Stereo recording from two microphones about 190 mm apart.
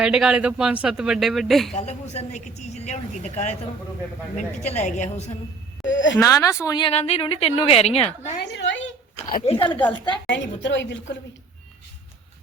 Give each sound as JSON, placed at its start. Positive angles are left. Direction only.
{"t": 0.0, "sound": "speech", "side_deg": -5}
{"t": 1.7, "sound": "a woman's voice", "side_deg": 35}
{"t": 4.6, "sound": "a woman's voice", "side_deg": 35}
{"t": 5.8, "sound": "speech", "side_deg": 80}
{"t": 6.1, "sound": "speech", "side_deg": 15}
{"t": 8.4, "sound": "speech", "side_deg": 65}
{"t": 9.5, "sound": "speech", "side_deg": 25}
{"t": 10.2, "sound": "speech", "side_deg": 70}